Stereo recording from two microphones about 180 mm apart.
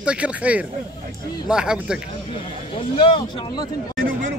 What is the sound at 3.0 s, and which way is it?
Speech, 30° left (ahead or behind).